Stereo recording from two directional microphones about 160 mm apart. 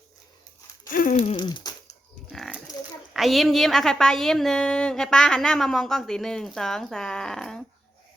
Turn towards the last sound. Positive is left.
turn(degrees=5)  # may be behind; listen again after turning